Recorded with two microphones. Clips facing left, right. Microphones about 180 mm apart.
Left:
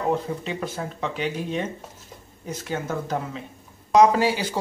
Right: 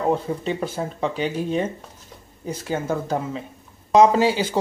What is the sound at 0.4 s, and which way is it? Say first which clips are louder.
Speech: right 4 dB; 30° right (ahead or behind).